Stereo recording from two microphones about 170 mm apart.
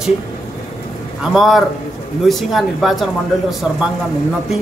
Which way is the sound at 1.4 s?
Centre (ahead or behind).